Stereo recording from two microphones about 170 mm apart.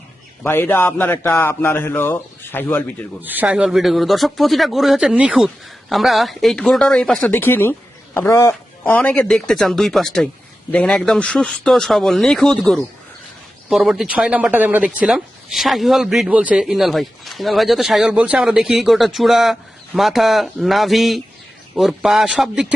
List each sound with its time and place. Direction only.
0.4 s speech: 15° left (ahead or behind)
3.2 s speech: 10° right (ahead or behind)